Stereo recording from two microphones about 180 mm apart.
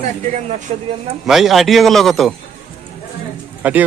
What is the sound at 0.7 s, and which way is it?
Speech, 40° right (ahead or behind).